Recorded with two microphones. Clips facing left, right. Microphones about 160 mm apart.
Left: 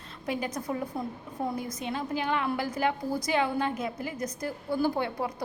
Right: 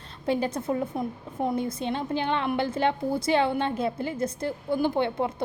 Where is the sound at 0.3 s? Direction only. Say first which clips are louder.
Right 5 dB; 30° right (ahead or behind).